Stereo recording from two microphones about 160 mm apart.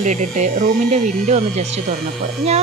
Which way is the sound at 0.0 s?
50° right (ahead or behind).